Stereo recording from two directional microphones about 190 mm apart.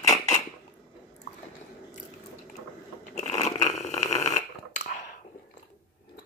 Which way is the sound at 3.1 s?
35° left (ahead or behind).